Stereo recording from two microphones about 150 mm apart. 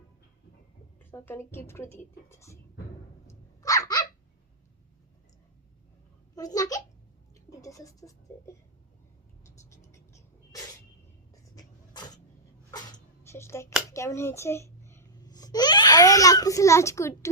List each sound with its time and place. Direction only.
0.9 s a woman's voice: 15° left (ahead or behind)
3.2 s dog: 20° left (ahead or behind)
6.3 s babbling: 25° left (ahead or behind)
7.6 s a sound: 20° left (ahead or behind)
9.6 s vehicle: 20° left (ahead or behind)
11.4 s a sound: 25° left (ahead or behind)
13.9 s babbling: 20° left (ahead or behind)